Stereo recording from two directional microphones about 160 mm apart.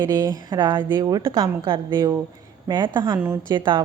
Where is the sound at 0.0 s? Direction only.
15° right (ahead or behind).